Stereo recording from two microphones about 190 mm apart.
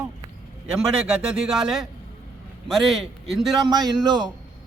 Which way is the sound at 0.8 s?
5° right (ahead or behind).